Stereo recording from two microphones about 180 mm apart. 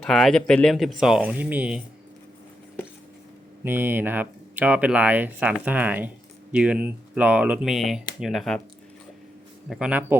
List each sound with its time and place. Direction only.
0.0 s speech: centre (ahead or behind)
3.6 s speech: 10° right (ahead or behind)
9.6 s speech: 5° right (ahead or behind)